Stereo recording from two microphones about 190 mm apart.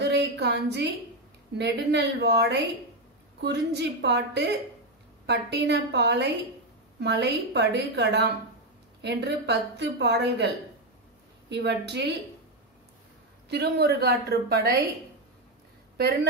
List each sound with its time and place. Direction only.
0.0 s a sound: 60° right (ahead or behind)
1.6 s a woman's voice: 65° right (ahead or behind)
13.5 s a woman's voice: 60° right (ahead or behind)